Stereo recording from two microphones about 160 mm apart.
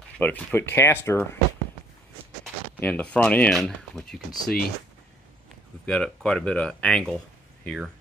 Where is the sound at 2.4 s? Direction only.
5° left (ahead or behind).